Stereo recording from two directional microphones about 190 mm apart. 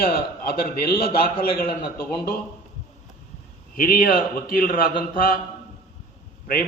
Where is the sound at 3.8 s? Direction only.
50° left (ahead or behind).